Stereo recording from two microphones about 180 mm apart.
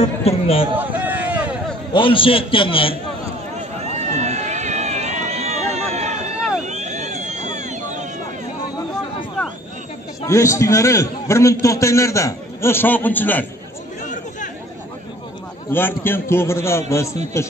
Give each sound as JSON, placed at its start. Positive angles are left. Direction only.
{"t": 0.0, "sound": "speech", "side_deg": 35}
{"t": 0.7, "sound": "a sound", "side_deg": -10}
{"t": 2.0, "sound": "a man's voice", "side_deg": 30}
{"t": 3.9, "sound": "run", "side_deg": -40}
{"t": 6.6, "sound": "a sound", "side_deg": -40}
{"t": 10.2, "sound": "a man's voice", "side_deg": 15}
{"t": 15.7, "sound": "a man's voice", "side_deg": 10}